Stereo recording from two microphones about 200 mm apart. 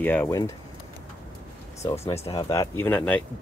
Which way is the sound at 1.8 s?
15° left (ahead or behind).